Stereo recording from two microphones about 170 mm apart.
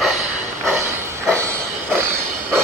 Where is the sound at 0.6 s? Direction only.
15° right (ahead or behind).